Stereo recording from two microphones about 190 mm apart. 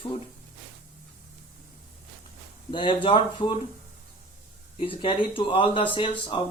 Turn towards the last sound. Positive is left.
turn(degrees=25)  # may be behind; listen again after turning